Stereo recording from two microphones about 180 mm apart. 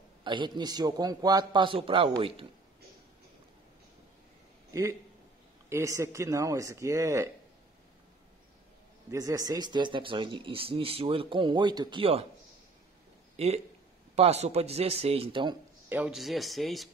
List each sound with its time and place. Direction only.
0.2 s speech: 25° right (ahead or behind)
5.7 s speech: 15° right (ahead or behind)
9.1 s speech: 20° right (ahead or behind)
13.4 s speech: 35° right (ahead or behind)
15.9 s speech: 5° right (ahead or behind)